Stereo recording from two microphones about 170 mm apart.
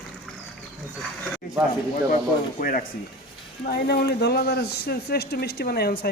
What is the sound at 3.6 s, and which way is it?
Speech, 65° left (ahead or behind).